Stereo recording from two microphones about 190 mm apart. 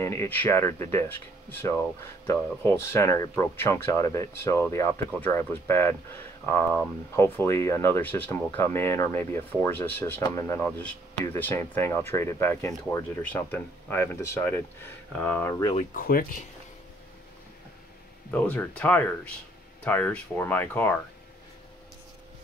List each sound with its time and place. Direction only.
0.0 s speech: 15° left (ahead or behind)
15.9 s speech: 50° left (ahead or behind)
18.3 s speech: 10° left (ahead or behind)